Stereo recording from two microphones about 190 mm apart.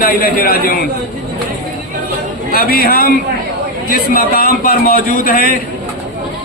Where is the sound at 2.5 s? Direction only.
50° left (ahead or behind).